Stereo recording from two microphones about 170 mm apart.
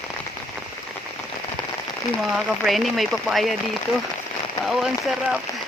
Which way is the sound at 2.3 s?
Centre (ahead or behind).